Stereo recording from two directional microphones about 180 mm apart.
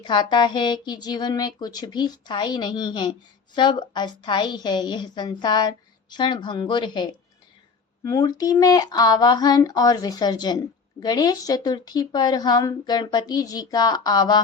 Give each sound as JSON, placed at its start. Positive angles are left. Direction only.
{"t": 0.0, "sound": "speech", "side_deg": 25}